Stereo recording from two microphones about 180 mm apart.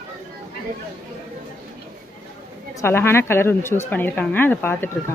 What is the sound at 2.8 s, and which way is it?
Speech, 15° left (ahead or behind).